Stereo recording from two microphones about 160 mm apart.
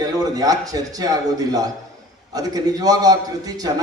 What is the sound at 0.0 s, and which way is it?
A man's voice, 25° right (ahead or behind).